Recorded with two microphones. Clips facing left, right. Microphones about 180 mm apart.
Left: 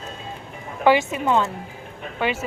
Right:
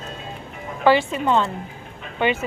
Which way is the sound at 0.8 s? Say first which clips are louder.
Even; 10° left (ahead or behind).